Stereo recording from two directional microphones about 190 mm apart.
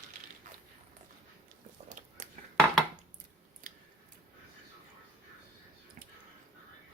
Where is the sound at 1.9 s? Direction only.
40° right (ahead or behind).